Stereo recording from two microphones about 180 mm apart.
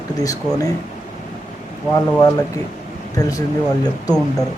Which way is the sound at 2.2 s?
20° left (ahead or behind).